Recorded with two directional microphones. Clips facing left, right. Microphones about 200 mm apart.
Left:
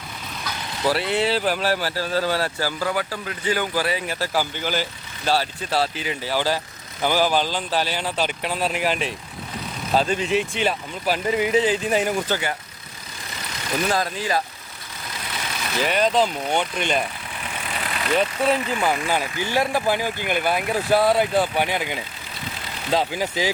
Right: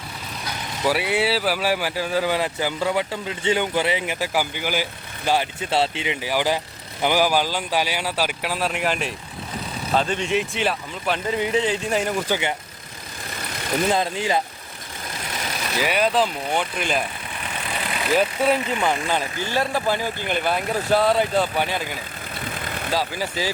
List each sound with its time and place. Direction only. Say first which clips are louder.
0.8 s speech: even; 10° right (ahead or behind)
9.9 s speech: left 1 dB; 35° left (ahead or behind)
10.2 s speech: left 1 dB; centre (ahead or behind)
12.3 s speech: right 1 dB; 20° right (ahead or behind)
13.9 s speech: right 2 dB; 25° right (ahead or behind)
15.8 s speech: left 1 dB; 10° right (ahead or behind)
18.1 s speech: right 1 dB; 5° right (ahead or behind); by 21.9 s 15° left (ahead or behind)
22.4 s vehicle: right 4 dB; 55° right (ahead or behind)
22.9 s speech: left 3 dB; 20° left (ahead or behind)